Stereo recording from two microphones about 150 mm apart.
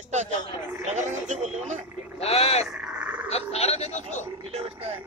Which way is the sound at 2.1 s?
45° left (ahead or behind).